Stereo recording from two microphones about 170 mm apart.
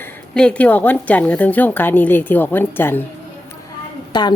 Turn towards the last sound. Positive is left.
turn(degrees=25)  # may be behind; listen again after turning